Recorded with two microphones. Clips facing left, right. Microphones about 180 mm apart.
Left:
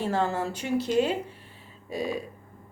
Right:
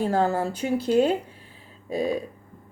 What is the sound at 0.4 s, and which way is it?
Speech, 35° right (ahead or behind).